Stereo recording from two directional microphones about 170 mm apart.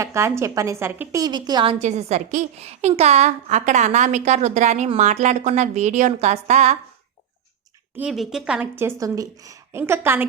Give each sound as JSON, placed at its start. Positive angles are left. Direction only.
{"t": 0.0, "sound": "a woman's voice", "side_deg": -15}
{"t": 1.8, "sound": "a woman's voice", "side_deg": -40}
{"t": 7.9, "sound": "a woman's voice", "side_deg": -5}